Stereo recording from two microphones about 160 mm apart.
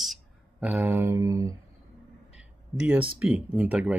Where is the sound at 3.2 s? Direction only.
10° right (ahead or behind).